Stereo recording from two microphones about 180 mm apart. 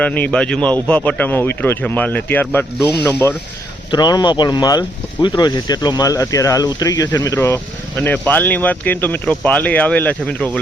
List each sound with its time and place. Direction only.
0.0 s speech: 10° left (ahead or behind)
3.9 s speech: 25° left (ahead or behind); by 10.6 s 5° left (ahead or behind)